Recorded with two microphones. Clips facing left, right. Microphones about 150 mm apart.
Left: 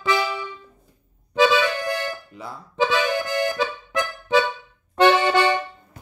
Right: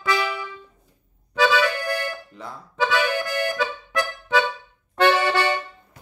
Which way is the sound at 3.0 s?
20° left (ahead or behind).